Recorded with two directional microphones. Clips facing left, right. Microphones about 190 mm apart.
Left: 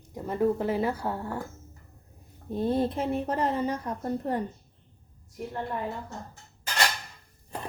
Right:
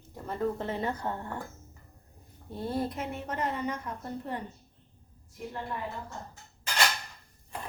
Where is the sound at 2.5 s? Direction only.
20° left (ahead or behind); by 4.4 s 40° left (ahead or behind).